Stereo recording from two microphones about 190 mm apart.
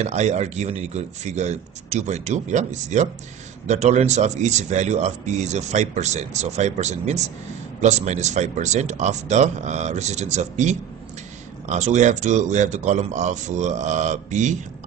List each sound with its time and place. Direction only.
0.0 s speech: 35° right (ahead or behind)